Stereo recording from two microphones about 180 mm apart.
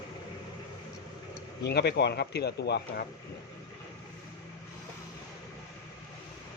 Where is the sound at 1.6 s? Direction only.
65° left (ahead or behind).